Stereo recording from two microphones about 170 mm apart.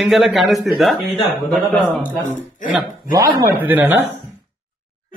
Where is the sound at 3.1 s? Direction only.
15° right (ahead or behind).